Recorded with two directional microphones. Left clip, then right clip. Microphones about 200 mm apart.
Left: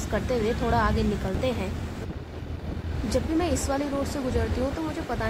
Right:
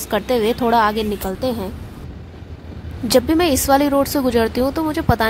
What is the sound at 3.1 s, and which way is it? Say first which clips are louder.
A woman's voice: right 11 dB; 45° right (ahead or behind).